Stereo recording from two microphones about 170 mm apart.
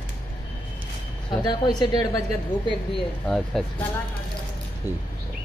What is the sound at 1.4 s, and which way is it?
Speech, 25° left (ahead or behind).